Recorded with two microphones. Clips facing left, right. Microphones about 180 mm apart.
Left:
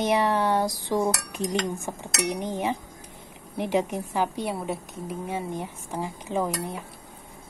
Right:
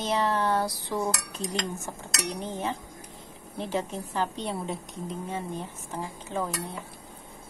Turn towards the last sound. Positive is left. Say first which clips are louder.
# left 4 dB
turn(degrees=15)  # may be behind; listen again after turning